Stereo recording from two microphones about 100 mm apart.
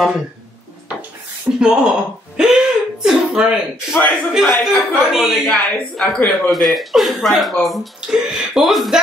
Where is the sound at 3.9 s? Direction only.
20° left (ahead or behind).